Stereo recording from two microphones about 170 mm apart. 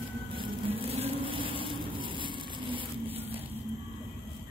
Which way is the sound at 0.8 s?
35° right (ahead or behind).